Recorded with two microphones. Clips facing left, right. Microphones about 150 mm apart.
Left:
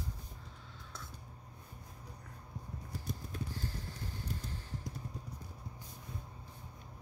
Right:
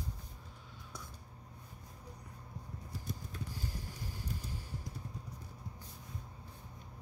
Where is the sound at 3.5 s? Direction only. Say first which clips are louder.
Left 1 dB; 10° right (ahead or behind).